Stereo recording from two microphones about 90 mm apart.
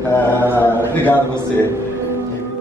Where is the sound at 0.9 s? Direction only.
20° left (ahead or behind).